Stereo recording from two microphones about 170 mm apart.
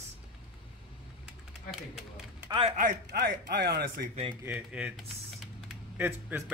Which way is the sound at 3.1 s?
75° right (ahead or behind).